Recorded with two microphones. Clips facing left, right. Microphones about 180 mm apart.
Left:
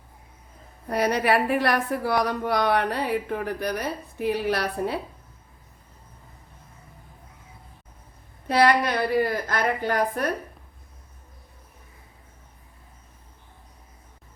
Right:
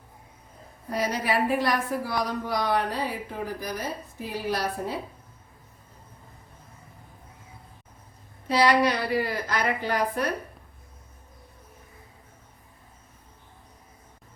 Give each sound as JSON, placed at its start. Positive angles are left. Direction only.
{"t": 0.9, "sound": "a woman's voice", "side_deg": 65}
{"t": 8.4, "sound": "a woman's voice", "side_deg": 55}